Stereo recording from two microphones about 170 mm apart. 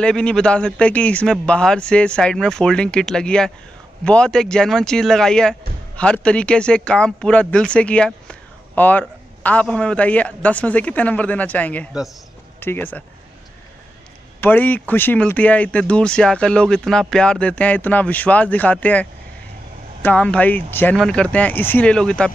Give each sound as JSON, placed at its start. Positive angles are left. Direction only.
{"t": 0.0, "sound": "speech", "side_deg": 5}
{"t": 14.4, "sound": "speech", "side_deg": 10}